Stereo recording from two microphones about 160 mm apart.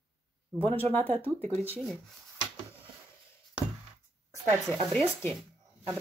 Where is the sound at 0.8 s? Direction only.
15° left (ahead or behind).